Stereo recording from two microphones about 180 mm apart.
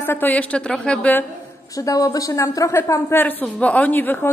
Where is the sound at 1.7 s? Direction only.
20° left (ahead or behind).